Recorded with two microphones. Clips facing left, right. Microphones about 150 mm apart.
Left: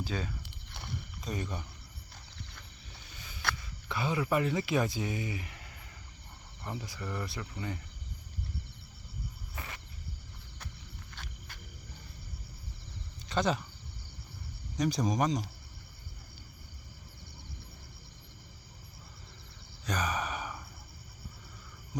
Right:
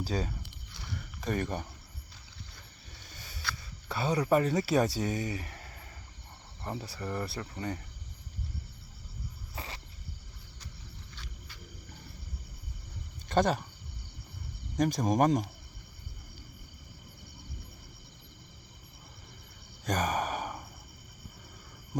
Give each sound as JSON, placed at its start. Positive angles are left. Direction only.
{"t": 0.0, "sound": "speech", "side_deg": -35}
{"t": 1.2, "sound": "speech", "side_deg": -55}
{"t": 3.8, "sound": "speech", "side_deg": -35}
{"t": 9.6, "sound": "a sound", "side_deg": -30}
{"t": 11.1, "sound": "a sound", "side_deg": 55}
{"t": 13.2, "sound": "speech", "side_deg": -50}
{"t": 14.8, "sound": "speech", "side_deg": -50}
{"t": 19.8, "sound": "gasp", "side_deg": -45}